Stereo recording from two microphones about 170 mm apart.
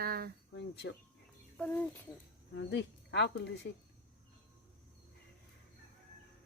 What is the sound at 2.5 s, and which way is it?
Speech, 90° left.